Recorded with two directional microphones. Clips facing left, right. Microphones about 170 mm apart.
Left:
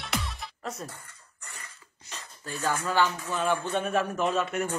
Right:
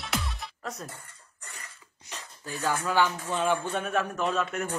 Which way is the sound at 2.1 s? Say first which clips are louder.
Even; 15° right (ahead or behind).